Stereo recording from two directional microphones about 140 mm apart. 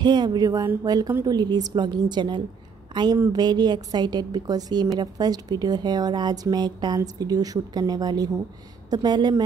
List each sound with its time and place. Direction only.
0.0 s a woman's voice: 30° right (ahead or behind)